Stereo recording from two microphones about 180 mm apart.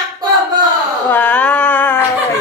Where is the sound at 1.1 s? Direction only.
10° left (ahead or behind).